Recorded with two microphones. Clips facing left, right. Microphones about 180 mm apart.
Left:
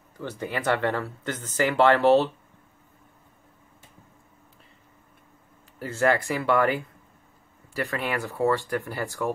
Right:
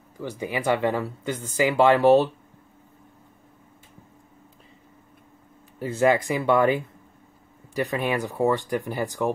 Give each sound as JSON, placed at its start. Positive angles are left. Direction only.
{"t": 0.2, "sound": "speech", "side_deg": -10}
{"t": 5.8, "sound": "speech", "side_deg": -15}